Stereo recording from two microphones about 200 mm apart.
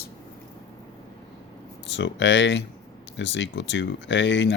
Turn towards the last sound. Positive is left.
turn(degrees=65)  # may be behind; listen again after turning